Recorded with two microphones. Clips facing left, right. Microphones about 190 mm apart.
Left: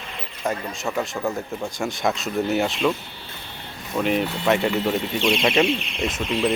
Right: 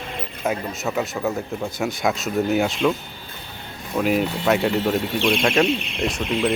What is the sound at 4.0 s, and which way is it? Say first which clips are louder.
Speech: right 2 dB; 5° right (ahead or behind).